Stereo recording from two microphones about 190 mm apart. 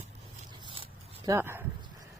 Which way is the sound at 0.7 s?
25° right (ahead or behind).